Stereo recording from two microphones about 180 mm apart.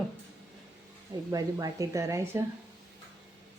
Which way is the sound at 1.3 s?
20° right (ahead or behind).